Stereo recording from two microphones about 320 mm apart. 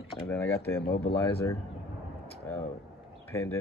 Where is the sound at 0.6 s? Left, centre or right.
Left.